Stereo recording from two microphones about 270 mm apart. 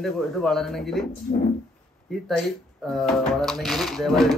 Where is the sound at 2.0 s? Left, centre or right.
Centre.